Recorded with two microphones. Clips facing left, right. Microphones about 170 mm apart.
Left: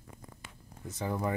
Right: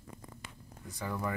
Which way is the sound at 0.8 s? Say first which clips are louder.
Left 3 dB; 25° left (ahead or behind).